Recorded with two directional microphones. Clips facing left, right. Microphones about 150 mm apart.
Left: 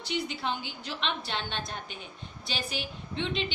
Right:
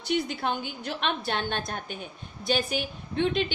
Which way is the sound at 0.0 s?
50° right (ahead or behind).